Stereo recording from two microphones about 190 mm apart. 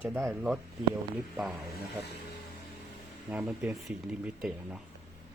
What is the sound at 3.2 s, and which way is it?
Speech, 5° right (ahead or behind).